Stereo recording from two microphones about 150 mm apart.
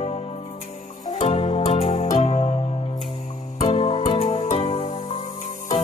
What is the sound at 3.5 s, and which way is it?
Music, 45° left (ahead or behind).